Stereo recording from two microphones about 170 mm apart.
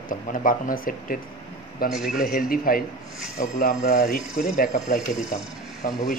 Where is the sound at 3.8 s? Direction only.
65° left (ahead or behind).